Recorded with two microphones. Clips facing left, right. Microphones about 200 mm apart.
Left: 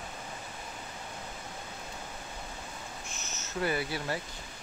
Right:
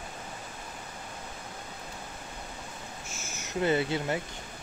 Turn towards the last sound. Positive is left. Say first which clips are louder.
# right 5 dB
turn(degrees=-20)  # may be behind; listen again after turning